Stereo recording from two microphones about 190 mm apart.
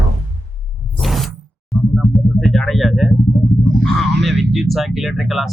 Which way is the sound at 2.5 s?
Centre (ahead or behind).